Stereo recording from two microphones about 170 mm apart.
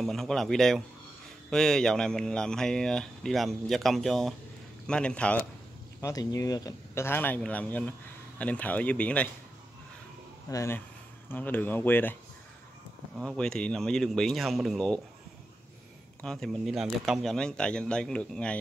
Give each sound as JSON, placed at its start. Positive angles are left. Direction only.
{"t": 0.0, "sound": "speech", "side_deg": 0}
{"t": 5.9, "sound": "speech", "side_deg": 20}
{"t": 10.5, "sound": "speech", "side_deg": 15}
{"t": 13.2, "sound": "speech", "side_deg": 5}
{"t": 16.2, "sound": "speech", "side_deg": 0}